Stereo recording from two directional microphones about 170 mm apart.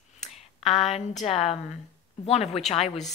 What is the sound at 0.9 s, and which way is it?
A woman's voice, 40° left (ahead or behind).